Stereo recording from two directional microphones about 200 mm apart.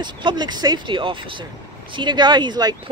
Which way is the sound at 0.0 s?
25° right (ahead or behind).